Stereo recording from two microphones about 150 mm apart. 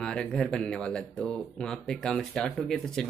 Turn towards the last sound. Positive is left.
turn(degrees=5)  # may be behind; listen again after turning